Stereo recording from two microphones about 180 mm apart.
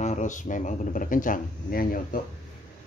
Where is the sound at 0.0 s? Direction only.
40° left (ahead or behind).